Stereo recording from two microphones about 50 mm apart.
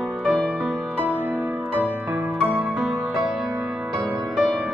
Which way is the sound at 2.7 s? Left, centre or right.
Centre.